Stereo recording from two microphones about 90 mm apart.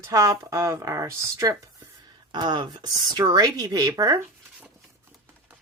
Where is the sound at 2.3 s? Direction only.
60° right (ahead or behind); by 4.2 s 45° right (ahead or behind).